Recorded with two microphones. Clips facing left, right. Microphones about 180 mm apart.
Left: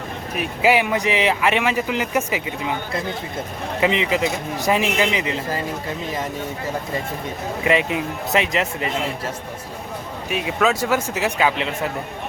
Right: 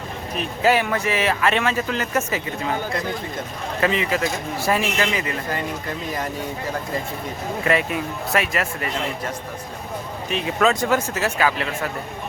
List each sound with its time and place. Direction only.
0.3 s speech: 15° left (ahead or behind)
3.8 s speech: 15° left (ahead or behind)
7.6 s speech: 20° left (ahead or behind)
10.2 s speech: 5° left (ahead or behind)